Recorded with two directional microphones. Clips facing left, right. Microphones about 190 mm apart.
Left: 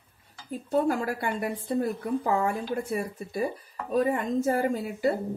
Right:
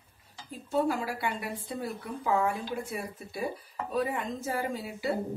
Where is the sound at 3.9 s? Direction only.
50° left (ahead or behind).